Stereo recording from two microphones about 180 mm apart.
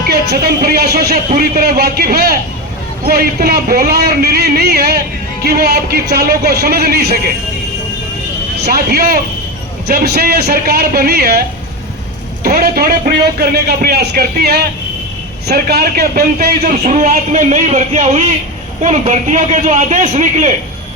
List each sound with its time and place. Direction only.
0.1 s speech: 60° right (ahead or behind)
8.6 s a man's voice: 55° right (ahead or behind)